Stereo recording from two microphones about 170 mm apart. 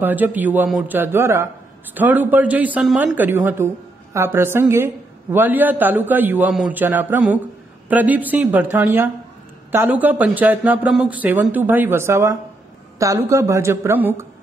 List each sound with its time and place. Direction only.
0.0 s a woman's voice: 10° right (ahead or behind)